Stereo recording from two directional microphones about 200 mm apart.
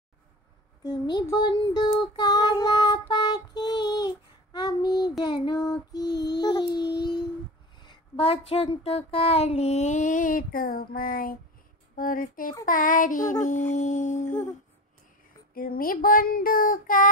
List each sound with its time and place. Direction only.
0.8 s child singing: 20° left (ahead or behind)
6.3 s a sound: 20° left (ahead or behind)
7.7 s speech: 20° left (ahead or behind); by 14.3 s 40° left (ahead or behind)
15.5 s speech: 45° left (ahead or behind)